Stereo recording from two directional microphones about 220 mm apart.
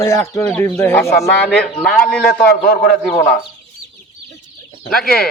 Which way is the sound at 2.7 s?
45° left (ahead or behind).